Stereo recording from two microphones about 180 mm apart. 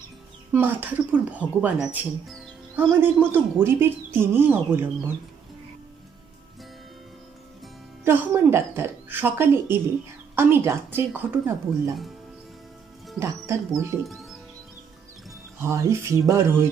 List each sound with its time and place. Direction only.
0.5 s speech: 10° right (ahead or behind)
2.7 s speech: 10° right (ahead or behind)
8.0 s a woman's voice: 15° right (ahead or behind)
13.1 s speech: 15° right (ahead or behind)
14.0 s speech: centre (ahead or behind)
15.6 s speech: 15° right (ahead or behind)